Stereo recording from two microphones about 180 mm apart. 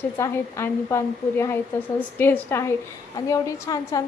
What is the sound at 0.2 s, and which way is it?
A woman's voice, 15° left (ahead or behind).